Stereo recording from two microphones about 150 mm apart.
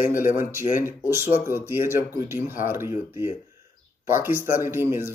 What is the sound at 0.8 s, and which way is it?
Speech, 15° right (ahead or behind).